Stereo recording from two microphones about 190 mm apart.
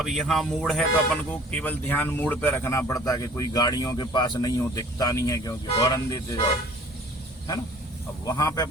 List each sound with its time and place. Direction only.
0.0 s speech: centre (ahead or behind); by 6.4 s 20° left (ahead or behind)
8.2 s speech: 20° left (ahead or behind)